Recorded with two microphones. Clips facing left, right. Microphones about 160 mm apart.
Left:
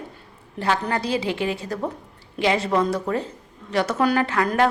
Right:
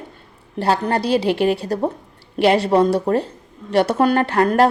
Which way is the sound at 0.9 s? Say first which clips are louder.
Right 6 dB; 65° right (ahead or behind).